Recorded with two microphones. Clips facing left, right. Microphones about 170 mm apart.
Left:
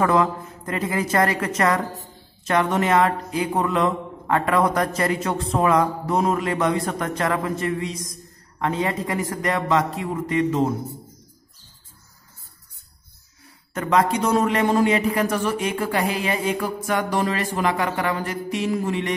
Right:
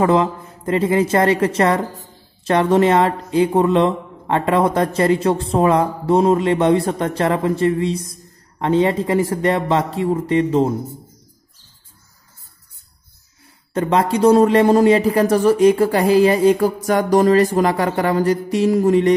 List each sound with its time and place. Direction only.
0.0 s a man's voice: 25° right (ahead or behind)
13.7 s speech: 30° right (ahead or behind)